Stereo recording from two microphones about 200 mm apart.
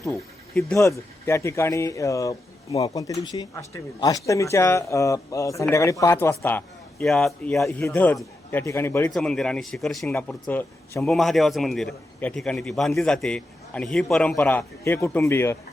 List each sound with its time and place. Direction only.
0.5 s speech: 15° left (ahead or behind)
7.6 s speech: 15° left (ahead or behind)